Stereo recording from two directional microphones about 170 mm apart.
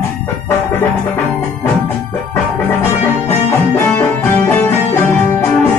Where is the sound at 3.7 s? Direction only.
15° left (ahead or behind).